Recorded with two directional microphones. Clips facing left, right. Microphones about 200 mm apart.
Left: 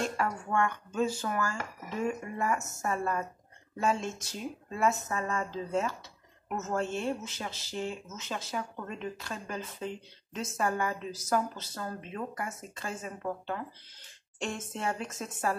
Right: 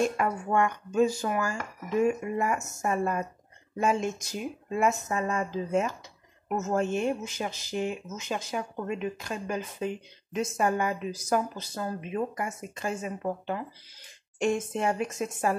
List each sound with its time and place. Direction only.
0.0 s speech: 15° right (ahead or behind)